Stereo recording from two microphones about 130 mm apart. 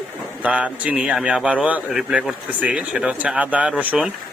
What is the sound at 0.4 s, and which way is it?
A man's voice, 10° right (ahead or behind).